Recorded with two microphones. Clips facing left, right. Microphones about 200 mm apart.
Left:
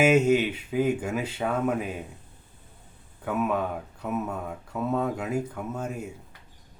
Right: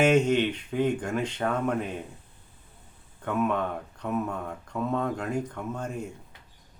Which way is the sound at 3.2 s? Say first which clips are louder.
Even; 5° left (ahead or behind).